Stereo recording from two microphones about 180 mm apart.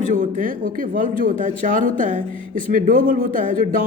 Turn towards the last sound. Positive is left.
turn(degrees=-50)  # may be behind; listen again after turning